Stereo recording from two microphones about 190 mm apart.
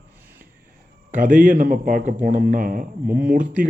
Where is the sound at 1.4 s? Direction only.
40° right (ahead or behind).